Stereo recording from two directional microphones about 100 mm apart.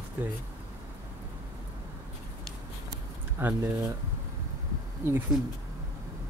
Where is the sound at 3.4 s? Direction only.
20° right (ahead or behind).